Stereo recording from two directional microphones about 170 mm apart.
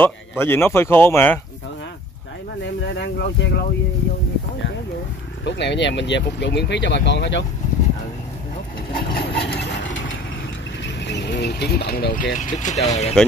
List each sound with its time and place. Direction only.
0.0 s speech: 15° left (ahead or behind)
3.0 s speech: 90° left
5.4 s speech: 90° left
9.1 s vehicle: 85° left
11.1 s speech: 90° left; by 12.1 s 70° left (ahead or behind)
12.1 s speech: 50° left (ahead or behind)